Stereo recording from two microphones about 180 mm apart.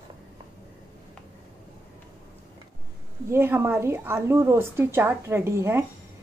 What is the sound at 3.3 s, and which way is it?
A woman's voice, 10° right (ahead or behind).